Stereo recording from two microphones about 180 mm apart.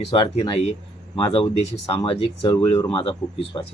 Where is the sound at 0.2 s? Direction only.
25° left (ahead or behind).